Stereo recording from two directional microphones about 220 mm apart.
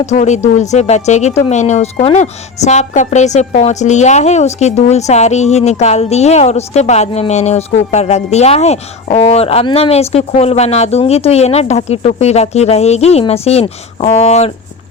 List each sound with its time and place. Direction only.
0.0 s speech: 30° left (ahead or behind)